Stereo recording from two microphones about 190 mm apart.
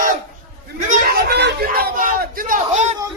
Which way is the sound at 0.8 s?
55° right (ahead or behind).